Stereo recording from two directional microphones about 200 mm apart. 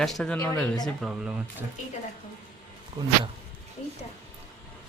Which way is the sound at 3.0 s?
20° right (ahead or behind).